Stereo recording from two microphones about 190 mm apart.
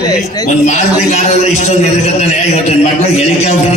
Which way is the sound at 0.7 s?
35° left (ahead or behind).